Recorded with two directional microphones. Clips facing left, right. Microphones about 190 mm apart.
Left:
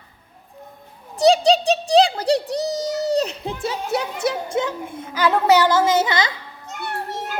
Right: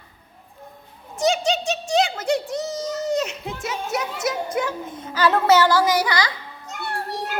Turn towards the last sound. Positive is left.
turn(degrees=20)  # may be behind; listen again after turning